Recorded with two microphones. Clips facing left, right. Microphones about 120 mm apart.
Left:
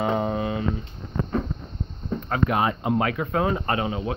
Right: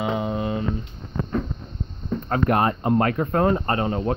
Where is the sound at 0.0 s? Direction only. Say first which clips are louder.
Left 1 dB; 35° left (ahead or behind).